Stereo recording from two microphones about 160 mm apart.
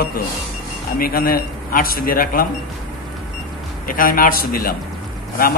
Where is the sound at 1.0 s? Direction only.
65° left (ahead or behind).